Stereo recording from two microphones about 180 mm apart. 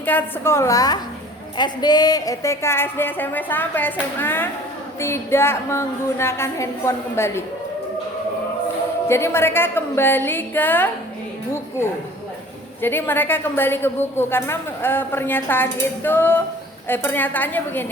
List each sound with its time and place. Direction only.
0.0 s a woman's voice: 10° left (ahead or behind)
9.0 s a woman's voice: 15° left (ahead or behind)
12.8 s a woman's voice: 10° left (ahead or behind)